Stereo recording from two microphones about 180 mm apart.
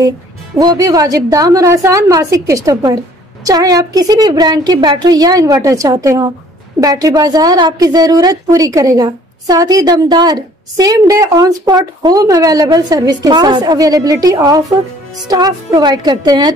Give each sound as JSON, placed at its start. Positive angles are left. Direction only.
{"t": 0.6, "sound": "a woman's voice", "side_deg": -20}